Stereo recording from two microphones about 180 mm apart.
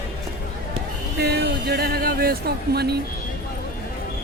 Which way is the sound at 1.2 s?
65° right (ahead or behind).